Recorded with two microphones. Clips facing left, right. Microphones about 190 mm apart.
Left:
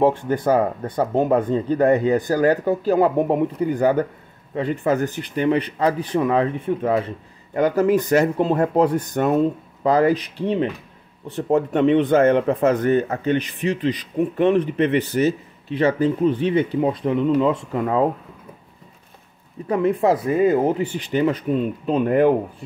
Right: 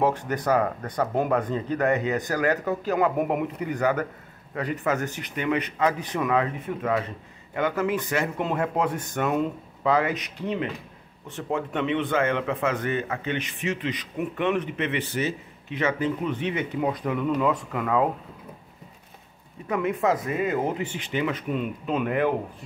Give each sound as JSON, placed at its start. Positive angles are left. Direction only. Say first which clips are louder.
{"t": 0.0, "sound": "a man's voice", "louder": "left 6 dB", "side_deg": 25}
{"t": 19.7, "sound": "a man's voice", "louder": "left 6 dB", "side_deg": 35}